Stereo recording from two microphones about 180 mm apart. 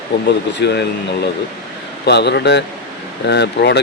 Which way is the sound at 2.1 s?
70° left (ahead or behind).